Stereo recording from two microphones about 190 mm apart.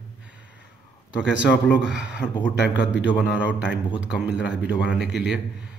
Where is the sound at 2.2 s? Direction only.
30° left (ahead or behind).